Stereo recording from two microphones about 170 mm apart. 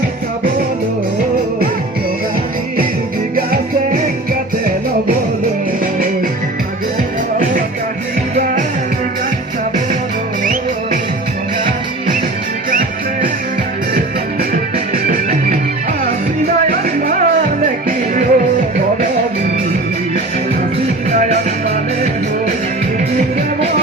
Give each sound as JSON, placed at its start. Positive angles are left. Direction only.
{"t": 3.3, "sound": "music", "side_deg": -60}
{"t": 7.3, "sound": "music", "side_deg": -55}
{"t": 14.5, "sound": "music", "side_deg": -55}
{"t": 16.6, "sound": "music", "side_deg": -55}
{"t": 21.1, "sound": "music", "side_deg": -45}